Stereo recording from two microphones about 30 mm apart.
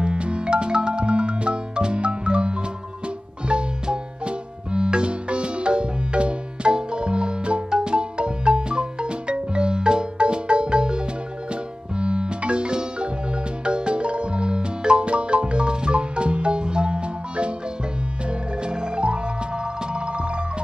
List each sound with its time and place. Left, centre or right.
0.0 s music: right
18.6 s music: right